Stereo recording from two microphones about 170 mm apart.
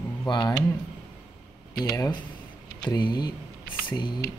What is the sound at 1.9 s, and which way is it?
Speech, 15° left (ahead or behind).